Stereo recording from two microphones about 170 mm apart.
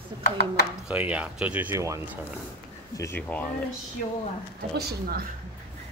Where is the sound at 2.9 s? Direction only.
15° left (ahead or behind).